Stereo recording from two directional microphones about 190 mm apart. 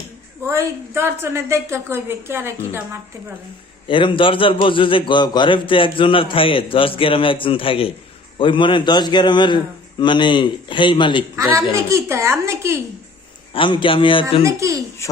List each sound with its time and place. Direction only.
0.4 s a woman's voice: 15° right (ahead or behind)
3.8 s a man's voice: 25° left (ahead or behind)
11.7 s a woman's voice: 15° right (ahead or behind)
13.5 s a man's voice: 25° left (ahead or behind)
14.4 s a woman's voice: 15° right (ahead or behind)
15.0 s a sound: 15° left (ahead or behind)